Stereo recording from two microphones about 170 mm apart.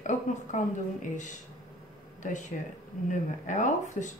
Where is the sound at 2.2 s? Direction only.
45° left (ahead or behind).